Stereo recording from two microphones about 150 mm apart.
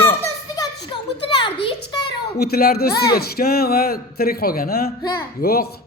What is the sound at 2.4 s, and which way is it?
Speech, 90° left.